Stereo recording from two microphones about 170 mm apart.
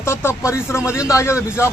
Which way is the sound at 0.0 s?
15° left (ahead or behind).